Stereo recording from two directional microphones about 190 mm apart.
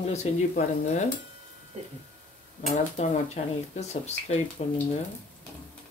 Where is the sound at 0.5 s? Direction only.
40° left (ahead or behind).